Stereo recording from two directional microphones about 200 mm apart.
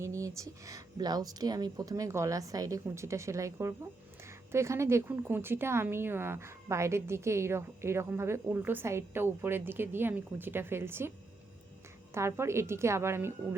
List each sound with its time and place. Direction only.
0.0 s a woman's voice: 15° right (ahead or behind)
12.1 s a woman's voice: 15° right (ahead or behind)